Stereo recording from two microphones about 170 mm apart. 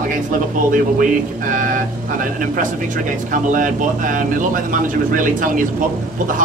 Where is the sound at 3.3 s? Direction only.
50° right (ahead or behind).